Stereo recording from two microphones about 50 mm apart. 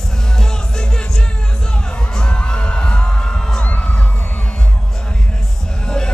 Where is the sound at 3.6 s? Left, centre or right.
Left.